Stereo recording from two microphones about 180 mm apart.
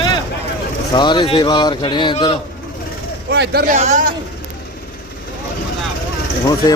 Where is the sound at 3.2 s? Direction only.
65° right (ahead or behind).